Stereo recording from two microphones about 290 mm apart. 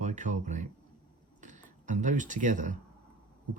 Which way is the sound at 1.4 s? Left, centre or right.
Right.